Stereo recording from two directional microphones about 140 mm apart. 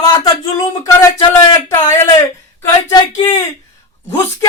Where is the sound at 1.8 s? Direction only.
20° left (ahead or behind).